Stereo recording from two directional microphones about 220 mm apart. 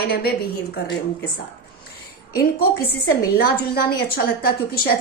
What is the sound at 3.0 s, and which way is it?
A woman's voice, 45° left (ahead or behind).